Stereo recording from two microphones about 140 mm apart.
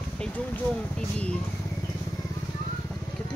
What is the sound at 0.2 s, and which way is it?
Speech, 10° left (ahead or behind).